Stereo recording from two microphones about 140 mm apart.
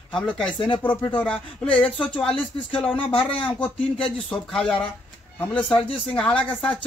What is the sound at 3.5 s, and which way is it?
Speech, 10° left (ahead or behind).